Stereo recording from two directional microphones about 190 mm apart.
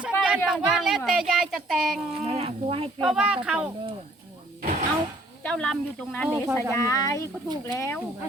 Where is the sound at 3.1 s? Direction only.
5° right (ahead or behind).